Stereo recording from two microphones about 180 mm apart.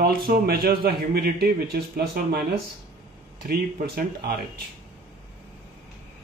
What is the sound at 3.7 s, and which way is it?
Speech, 55° right (ahead or behind).